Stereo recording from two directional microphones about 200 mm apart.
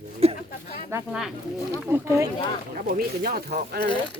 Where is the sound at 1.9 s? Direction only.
15° right (ahead or behind).